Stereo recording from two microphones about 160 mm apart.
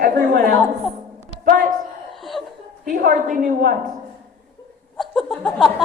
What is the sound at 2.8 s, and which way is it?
Speech, 60° right (ahead or behind).